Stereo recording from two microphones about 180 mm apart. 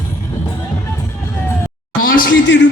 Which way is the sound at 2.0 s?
50° left (ahead or behind).